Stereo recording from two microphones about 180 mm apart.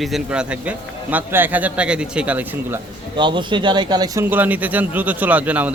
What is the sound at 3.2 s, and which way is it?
A man's voice, 25° right (ahead or behind).